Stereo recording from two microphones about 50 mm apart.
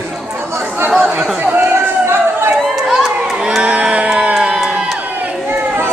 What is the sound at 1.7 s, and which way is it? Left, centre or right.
Chatter, right.